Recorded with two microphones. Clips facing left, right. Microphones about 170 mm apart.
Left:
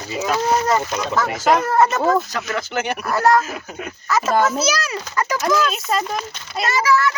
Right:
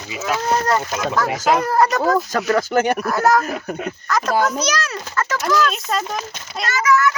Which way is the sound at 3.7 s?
60° right (ahead or behind).